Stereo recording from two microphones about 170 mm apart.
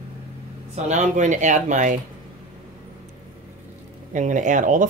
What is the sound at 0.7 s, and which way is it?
Speech, 45° right (ahead or behind).